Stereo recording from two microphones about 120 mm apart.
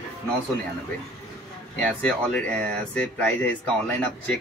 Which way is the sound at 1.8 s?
10° left (ahead or behind).